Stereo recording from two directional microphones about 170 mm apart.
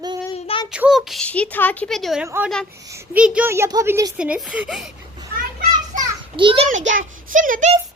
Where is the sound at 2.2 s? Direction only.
15° right (ahead or behind).